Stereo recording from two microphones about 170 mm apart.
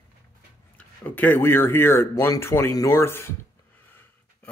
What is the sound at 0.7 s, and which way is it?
Speech, 10° left (ahead or behind).